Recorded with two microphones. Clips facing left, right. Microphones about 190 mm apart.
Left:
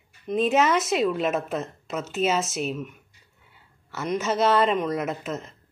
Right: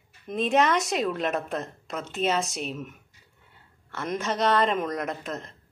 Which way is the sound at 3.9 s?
5° left (ahead or behind).